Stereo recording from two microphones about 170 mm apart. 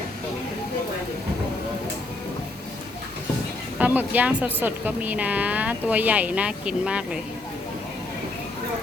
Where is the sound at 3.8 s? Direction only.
10° right (ahead or behind).